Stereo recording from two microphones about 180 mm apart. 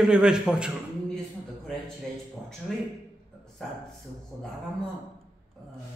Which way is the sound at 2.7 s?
5° left (ahead or behind).